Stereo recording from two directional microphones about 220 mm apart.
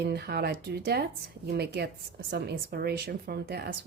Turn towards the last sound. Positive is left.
turn(degrees=-45)  # may be behind; listen again after turning